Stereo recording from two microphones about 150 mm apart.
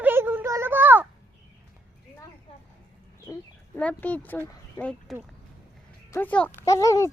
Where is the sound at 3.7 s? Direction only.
10° left (ahead or behind).